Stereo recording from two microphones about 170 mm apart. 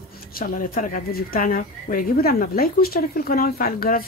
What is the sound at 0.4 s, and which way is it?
Speech, 55° left (ahead or behind).